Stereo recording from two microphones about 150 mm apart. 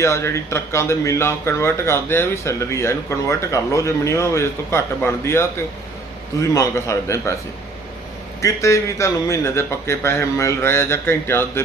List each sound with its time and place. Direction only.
0.0 s a man's voice: 20° left (ahead or behind)
8.4 s a man's voice: 20° left (ahead or behind)